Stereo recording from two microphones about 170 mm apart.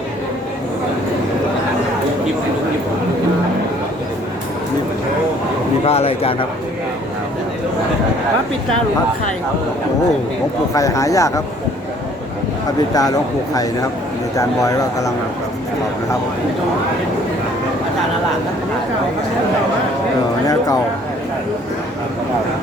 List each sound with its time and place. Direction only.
5.8 s a man's voice: 35° left (ahead or behind)
10.8 s speech: 20° left (ahead or behind)
12.9 s speech: 20° left (ahead or behind)